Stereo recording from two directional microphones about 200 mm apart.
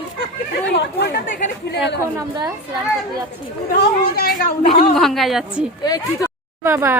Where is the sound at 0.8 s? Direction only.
55° left (ahead or behind).